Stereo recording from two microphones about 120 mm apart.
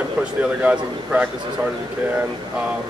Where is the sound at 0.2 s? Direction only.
10° right (ahead or behind).